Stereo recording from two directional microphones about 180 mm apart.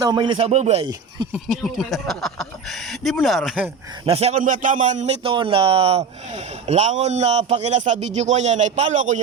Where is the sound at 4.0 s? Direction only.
35° right (ahead or behind).